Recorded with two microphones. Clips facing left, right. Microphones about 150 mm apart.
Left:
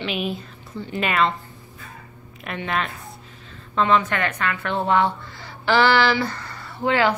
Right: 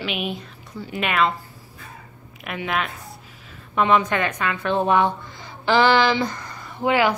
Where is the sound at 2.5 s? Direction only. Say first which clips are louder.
Even; 5° right (ahead or behind).